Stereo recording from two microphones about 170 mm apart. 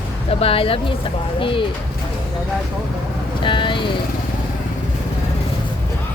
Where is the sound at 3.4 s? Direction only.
30° left (ahead or behind).